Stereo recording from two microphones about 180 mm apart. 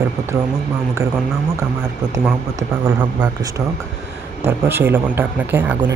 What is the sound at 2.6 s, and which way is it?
Speech, 20° right (ahead or behind).